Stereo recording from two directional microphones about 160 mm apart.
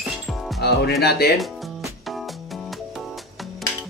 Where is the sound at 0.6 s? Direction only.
90° left.